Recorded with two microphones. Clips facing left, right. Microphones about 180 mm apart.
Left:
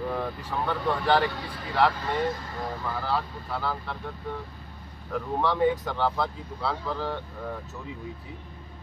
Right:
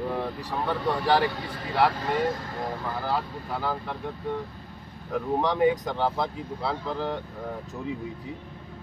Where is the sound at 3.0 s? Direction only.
15° right (ahead or behind).